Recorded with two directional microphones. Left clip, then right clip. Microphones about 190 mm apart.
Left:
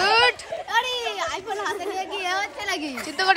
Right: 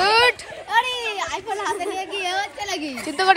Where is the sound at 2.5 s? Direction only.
5° left (ahead or behind).